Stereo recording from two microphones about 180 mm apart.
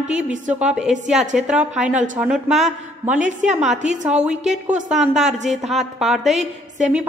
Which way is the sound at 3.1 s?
40° right (ahead or behind).